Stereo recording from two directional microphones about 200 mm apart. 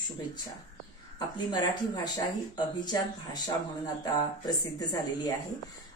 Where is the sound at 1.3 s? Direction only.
20° left (ahead or behind).